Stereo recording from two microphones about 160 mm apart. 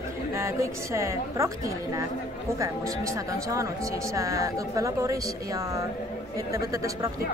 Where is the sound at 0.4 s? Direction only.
20° right (ahead or behind).